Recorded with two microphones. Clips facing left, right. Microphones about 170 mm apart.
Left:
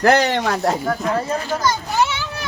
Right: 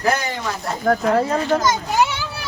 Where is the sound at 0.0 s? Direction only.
70° left (ahead or behind).